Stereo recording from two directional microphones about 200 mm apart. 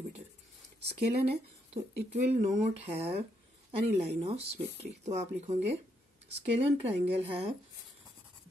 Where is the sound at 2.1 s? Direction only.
35° right (ahead or behind).